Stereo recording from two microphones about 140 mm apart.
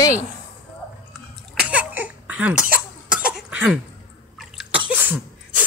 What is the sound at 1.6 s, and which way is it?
Cough, 10° right (ahead or behind).